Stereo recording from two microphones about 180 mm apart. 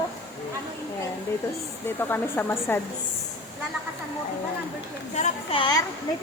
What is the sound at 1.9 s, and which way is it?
Speech, 10° left (ahead or behind).